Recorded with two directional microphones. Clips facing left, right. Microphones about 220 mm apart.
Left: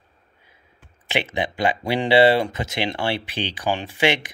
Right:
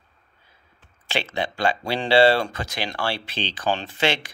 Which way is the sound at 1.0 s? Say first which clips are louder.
Left 2 dB; 20° left (ahead or behind).